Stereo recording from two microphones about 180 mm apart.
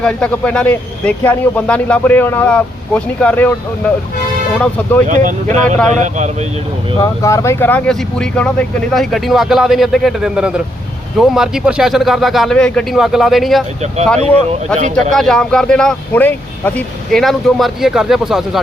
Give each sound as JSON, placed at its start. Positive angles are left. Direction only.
{"t": 0.0, "sound": "a man's voice", "side_deg": 5}
{"t": 5.0, "sound": "speech", "side_deg": -45}
{"t": 7.0, "sound": "speech", "side_deg": 15}
{"t": 15.1, "sound": "speech", "side_deg": 0}